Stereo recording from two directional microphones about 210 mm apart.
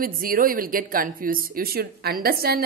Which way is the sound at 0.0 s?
40° right (ahead or behind).